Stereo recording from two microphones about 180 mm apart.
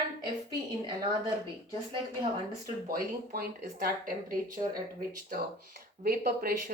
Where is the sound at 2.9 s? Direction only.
55° right (ahead or behind).